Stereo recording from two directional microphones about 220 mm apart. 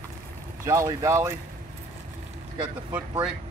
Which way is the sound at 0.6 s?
15° right (ahead or behind).